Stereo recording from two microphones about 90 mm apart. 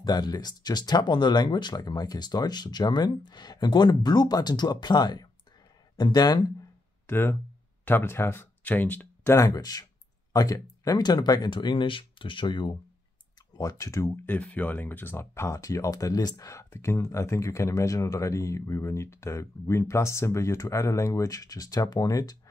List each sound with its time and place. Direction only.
0.0 s speech: 50° left (ahead or behind)
7.1 s speech: 25° left (ahead or behind)
9.4 s speech: 45° left (ahead or behind); by 12.7 s 60° left (ahead or behind)
13.6 s speech: 40° left (ahead or behind)
14.1 s speech: 20° left (ahead or behind); by 22.4 s 45° left (ahead or behind)